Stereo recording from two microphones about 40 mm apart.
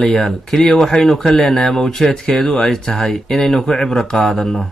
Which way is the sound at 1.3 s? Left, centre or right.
Left.